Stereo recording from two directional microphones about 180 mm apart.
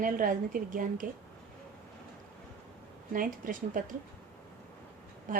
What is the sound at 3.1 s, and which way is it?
Speech, 50° right (ahead or behind).